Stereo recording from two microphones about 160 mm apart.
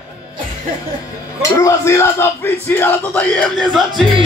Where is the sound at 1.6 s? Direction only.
15° left (ahead or behind).